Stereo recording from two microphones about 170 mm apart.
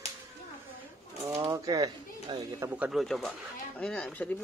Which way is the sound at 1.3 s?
20° right (ahead or behind).